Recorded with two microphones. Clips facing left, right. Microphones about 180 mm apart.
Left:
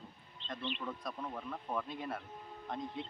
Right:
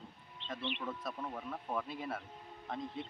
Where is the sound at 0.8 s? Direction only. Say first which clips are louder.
Even; 5° right (ahead or behind).